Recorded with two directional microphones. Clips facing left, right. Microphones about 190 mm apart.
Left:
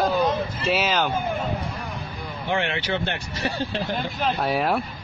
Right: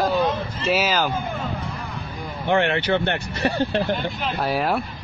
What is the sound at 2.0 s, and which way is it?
Speech, 60° right (ahead or behind).